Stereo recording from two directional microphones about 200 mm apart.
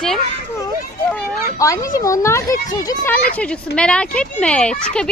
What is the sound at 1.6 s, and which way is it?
A woman's voice, 15° left (ahead or behind).